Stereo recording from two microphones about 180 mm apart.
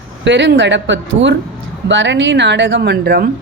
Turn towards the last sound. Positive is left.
turn(degrees=-65)  # may be behind; listen again after turning